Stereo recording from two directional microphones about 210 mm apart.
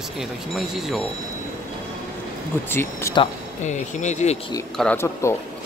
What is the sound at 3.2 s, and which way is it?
Speech, 35° left (ahead or behind).